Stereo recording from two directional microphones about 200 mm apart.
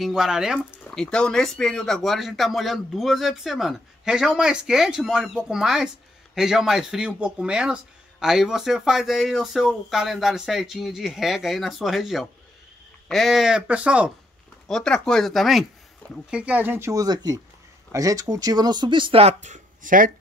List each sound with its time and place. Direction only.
0.0 s speech: 5° right (ahead or behind); by 20.1 s 40° right (ahead or behind)